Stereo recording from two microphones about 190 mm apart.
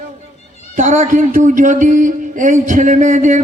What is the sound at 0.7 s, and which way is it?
A man's voice, 40° right (ahead or behind).